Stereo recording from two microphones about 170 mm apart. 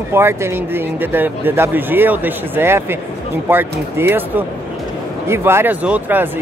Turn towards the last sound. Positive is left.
turn(degrees=-10)  # may be behind; listen again after turning